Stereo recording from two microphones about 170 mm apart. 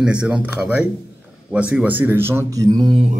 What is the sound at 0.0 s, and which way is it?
Speech, 5° right (ahead or behind).